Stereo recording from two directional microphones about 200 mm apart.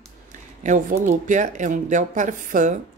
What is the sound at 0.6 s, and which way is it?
Speech, 40° right (ahead or behind).